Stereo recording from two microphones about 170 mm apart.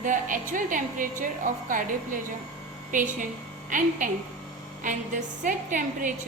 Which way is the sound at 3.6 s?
50° right (ahead or behind).